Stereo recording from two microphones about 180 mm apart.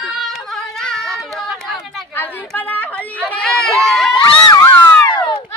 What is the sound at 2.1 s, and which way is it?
Chatter, 10° left (ahead or behind).